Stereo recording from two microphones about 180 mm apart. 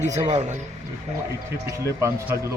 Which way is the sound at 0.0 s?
40° right (ahead or behind).